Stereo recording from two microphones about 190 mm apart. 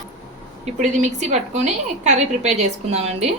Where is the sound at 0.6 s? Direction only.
40° right (ahead or behind).